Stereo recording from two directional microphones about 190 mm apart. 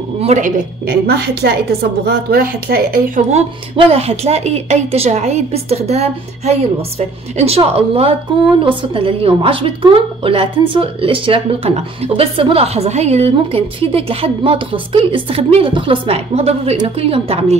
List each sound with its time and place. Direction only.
0.2 s a woman's voice: 35° right (ahead or behind)
0.8 s a woman's voice: 55° right (ahead or behind)
3.3 s a woman's voice: 30° right (ahead or behind)